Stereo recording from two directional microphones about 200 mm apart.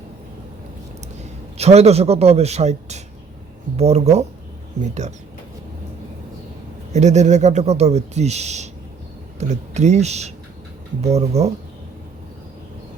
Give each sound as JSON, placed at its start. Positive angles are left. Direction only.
{"t": 1.5, "sound": "speech", "side_deg": -30}
{"t": 6.9, "sound": "speech", "side_deg": -35}